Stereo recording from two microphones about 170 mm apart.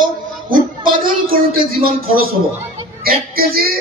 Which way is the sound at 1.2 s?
60° right (ahead or behind).